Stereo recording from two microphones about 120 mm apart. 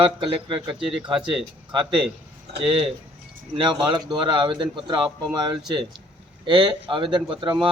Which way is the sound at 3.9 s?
40° right (ahead or behind).